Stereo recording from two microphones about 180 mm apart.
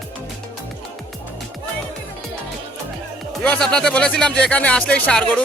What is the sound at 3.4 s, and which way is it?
Speech, 5° left (ahead or behind).